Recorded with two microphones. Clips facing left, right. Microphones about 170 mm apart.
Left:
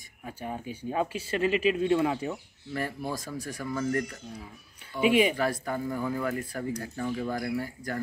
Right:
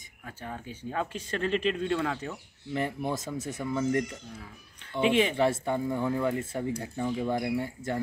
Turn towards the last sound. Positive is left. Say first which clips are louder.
# right 2 dB
turn(degrees=-25)  # may be behind; listen again after turning